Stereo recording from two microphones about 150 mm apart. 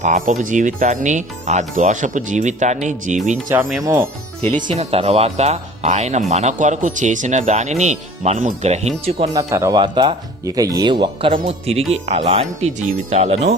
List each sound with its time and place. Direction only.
0.0 s speech: 50° right (ahead or behind)
3.5 s speech: 15° right (ahead or behind)
4.5 s speech: 50° right (ahead or behind)
9.3 s speech: 20° right (ahead or behind); by 13.6 s 50° right (ahead or behind)